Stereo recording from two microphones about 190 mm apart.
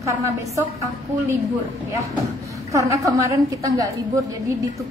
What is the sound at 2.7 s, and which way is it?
A woman's voice, 15° right (ahead or behind).